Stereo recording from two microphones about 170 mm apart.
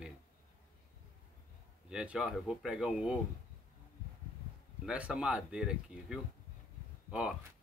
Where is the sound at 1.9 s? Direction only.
5° right (ahead or behind).